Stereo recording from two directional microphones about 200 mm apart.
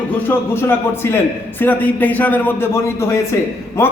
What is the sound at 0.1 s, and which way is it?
A man's voice, 10° left (ahead or behind).